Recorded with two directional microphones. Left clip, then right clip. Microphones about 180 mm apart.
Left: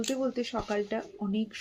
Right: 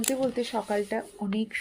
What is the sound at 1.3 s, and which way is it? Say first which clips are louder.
Speech: right 4 dB; 25° right (ahead or behind).